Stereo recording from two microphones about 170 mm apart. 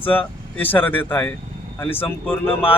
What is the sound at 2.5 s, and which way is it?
Speech, 30° left (ahead or behind).